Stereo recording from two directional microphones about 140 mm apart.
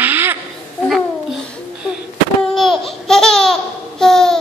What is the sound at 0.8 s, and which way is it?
Babbling, centre (ahead or behind).